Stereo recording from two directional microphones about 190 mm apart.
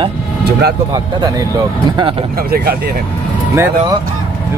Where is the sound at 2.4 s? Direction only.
55° right (ahead or behind).